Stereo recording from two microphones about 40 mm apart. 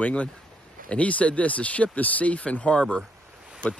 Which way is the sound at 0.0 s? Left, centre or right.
Left.